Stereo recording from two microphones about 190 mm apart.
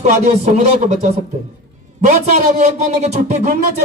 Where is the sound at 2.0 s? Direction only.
35° right (ahead or behind).